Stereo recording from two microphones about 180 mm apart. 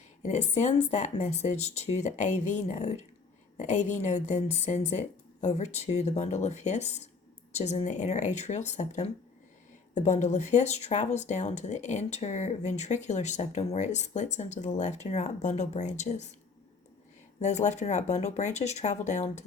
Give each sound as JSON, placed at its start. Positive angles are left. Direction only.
{"t": 0.2, "sound": "speech", "side_deg": 40}
{"t": 17.4, "sound": "speech", "side_deg": 40}